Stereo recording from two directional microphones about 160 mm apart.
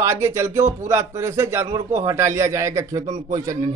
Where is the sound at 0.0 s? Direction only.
15° right (ahead or behind).